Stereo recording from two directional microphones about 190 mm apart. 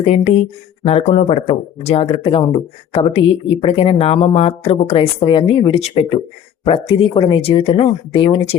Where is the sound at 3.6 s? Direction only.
30° left (ahead or behind).